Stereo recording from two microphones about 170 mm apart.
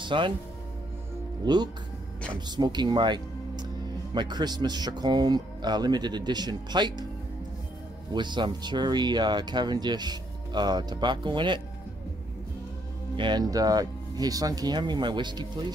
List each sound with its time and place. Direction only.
0.0 s speech: 30° right (ahead or behind)
1.4 s speech: 25° right (ahead or behind)
8.1 s speech: 25° right (ahead or behind)
13.1 s speech: 25° right (ahead or behind)